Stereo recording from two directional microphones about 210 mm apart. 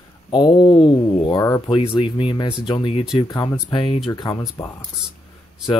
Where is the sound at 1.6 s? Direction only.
25° left (ahead or behind).